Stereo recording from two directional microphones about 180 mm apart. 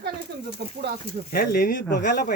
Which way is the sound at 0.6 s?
70° right (ahead or behind).